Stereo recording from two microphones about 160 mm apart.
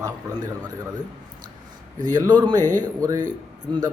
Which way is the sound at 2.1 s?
25° right (ahead or behind).